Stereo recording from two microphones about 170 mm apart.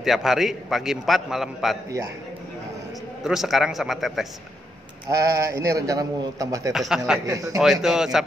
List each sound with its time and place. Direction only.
0.0 s a man's voice: centre (ahead or behind)
3.3 s a man's voice: centre (ahead or behind)
5.1 s a man's voice: 20° right (ahead or behind)
6.7 s a man's voice: centre (ahead or behind)
7.2 s a man's voice: 20° right (ahead or behind)
7.5 s a man's voice: centre (ahead or behind)